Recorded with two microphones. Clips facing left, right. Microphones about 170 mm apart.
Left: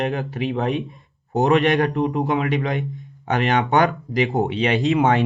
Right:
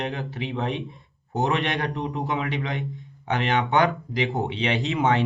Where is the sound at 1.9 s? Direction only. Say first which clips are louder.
Left 7 dB; 45° left (ahead or behind).